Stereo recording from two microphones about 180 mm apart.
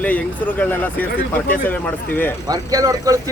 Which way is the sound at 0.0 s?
10° left (ahead or behind).